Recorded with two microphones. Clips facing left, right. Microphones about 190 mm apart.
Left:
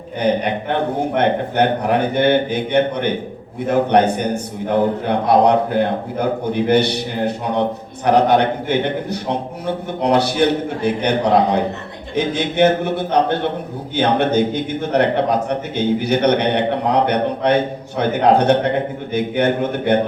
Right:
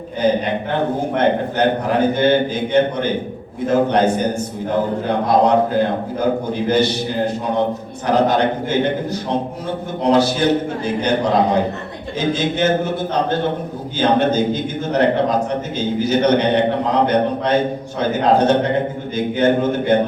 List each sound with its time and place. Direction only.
1.1 s a man's voice: 60° left (ahead or behind)
8.0 s a man's voice: 65° left (ahead or behind)